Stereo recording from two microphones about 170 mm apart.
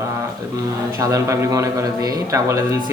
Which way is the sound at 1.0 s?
20° right (ahead or behind).